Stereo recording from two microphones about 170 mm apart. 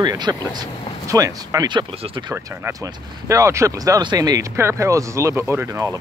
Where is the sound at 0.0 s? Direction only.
25° right (ahead or behind).